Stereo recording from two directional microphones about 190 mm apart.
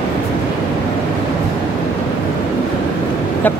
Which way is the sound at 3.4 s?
10° left (ahead or behind).